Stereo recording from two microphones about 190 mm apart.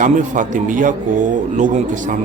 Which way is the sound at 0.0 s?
40° right (ahead or behind).